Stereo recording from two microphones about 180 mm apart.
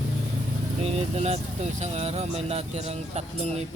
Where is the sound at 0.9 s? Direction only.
35° right (ahead or behind).